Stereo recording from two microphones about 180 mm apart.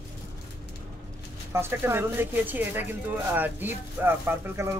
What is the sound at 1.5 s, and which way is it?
Speech, 15° right (ahead or behind).